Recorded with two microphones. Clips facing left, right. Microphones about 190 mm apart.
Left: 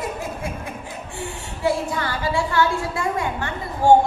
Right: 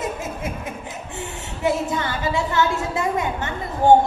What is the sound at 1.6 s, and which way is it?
A woman's voice, 20° right (ahead or behind).